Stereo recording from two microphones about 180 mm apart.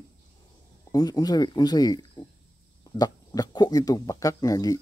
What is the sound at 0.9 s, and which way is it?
Speech, 20° left (ahead or behind).